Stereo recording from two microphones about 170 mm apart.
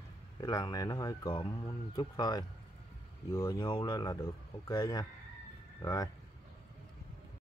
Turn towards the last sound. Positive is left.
turn(degrees=20)  # may be behind; listen again after turning